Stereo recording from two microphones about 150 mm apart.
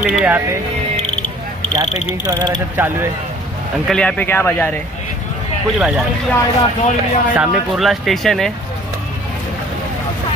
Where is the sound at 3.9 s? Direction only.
5° left (ahead or behind).